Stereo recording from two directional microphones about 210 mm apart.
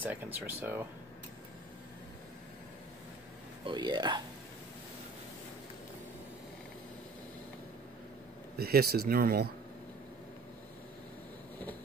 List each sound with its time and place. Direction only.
0.0 s speech: 10° right (ahead or behind)
3.6 s speech: 20° right (ahead or behind)
8.5 s speech: 45° right (ahead or behind)